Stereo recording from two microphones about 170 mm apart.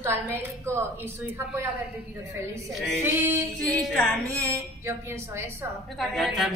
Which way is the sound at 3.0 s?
15° right (ahead or behind).